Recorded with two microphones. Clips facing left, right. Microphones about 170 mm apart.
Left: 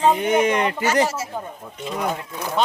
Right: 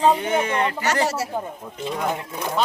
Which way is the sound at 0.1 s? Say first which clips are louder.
Left 3 dB; 20° left (ahead or behind).